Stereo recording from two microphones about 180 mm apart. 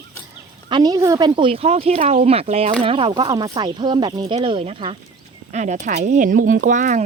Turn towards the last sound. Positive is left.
turn(degrees=-45)  # may be behind; listen again after turning